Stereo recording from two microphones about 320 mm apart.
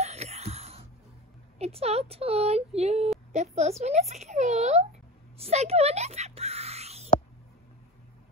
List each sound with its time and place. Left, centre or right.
0.0 s wail: centre
1.6 s speech: centre
5.4 s a sound: centre